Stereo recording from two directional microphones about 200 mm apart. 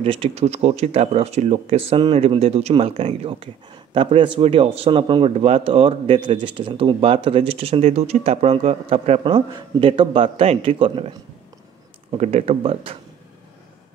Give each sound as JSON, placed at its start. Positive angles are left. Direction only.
{"t": 0.0, "sound": "speech", "side_deg": -25}
{"t": 12.1, "sound": "speech", "side_deg": -30}